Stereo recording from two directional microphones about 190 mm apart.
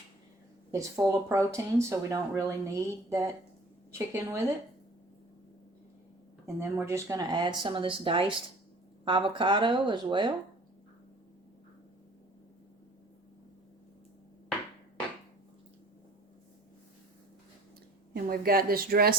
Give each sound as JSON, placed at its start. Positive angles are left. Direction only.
{"t": 0.7, "sound": "speech", "side_deg": -15}
{"t": 6.4, "sound": "speech", "side_deg": -15}
{"t": 18.1, "sound": "a woman's voice", "side_deg": -50}